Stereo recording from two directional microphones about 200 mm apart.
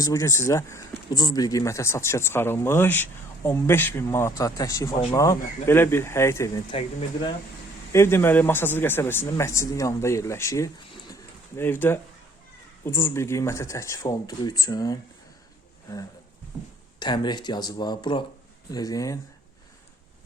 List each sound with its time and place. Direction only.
0.0 s speech: 15° left (ahead or behind)
7.9 s speech: 10° left (ahead or behind)
17.0 s speech: 20° left (ahead or behind)